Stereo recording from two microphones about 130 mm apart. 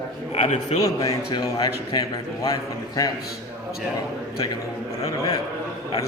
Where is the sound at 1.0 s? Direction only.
30° left (ahead or behind).